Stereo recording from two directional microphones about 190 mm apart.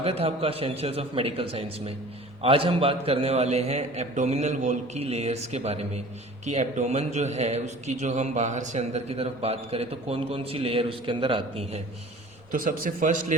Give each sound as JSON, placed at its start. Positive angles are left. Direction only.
{"t": 0.0, "sound": "a man's voice", "side_deg": -30}
{"t": 12.5, "sound": "speech", "side_deg": -50}